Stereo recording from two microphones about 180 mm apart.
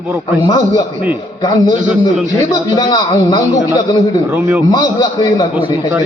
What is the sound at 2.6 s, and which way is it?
A man's voice, 25° left (ahead or behind).